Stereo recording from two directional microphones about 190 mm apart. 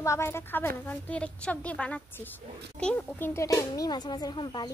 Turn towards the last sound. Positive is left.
turn(degrees=20)  # may be behind; listen again after turning